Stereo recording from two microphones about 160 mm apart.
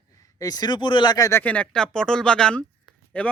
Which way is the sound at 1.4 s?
10° left (ahead or behind).